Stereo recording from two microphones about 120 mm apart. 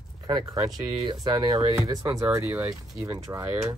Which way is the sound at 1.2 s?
35° right (ahead or behind).